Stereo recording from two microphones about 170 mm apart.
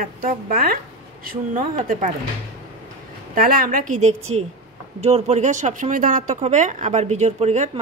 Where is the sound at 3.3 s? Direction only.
55° right (ahead or behind).